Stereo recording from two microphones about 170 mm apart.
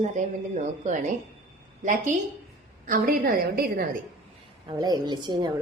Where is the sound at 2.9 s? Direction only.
60° right (ahead or behind).